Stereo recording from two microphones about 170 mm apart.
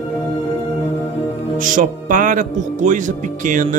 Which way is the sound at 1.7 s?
50° right (ahead or behind).